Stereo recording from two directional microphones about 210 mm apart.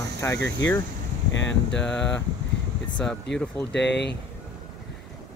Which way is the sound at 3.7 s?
55° left (ahead or behind).